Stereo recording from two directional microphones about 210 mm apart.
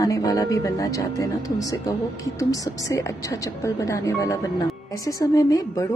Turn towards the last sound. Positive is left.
turn(degrees=15)  # may be behind; listen again after turning